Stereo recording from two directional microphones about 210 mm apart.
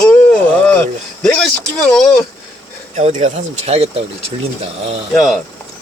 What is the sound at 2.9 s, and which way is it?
Speech, 35° right (ahead or behind).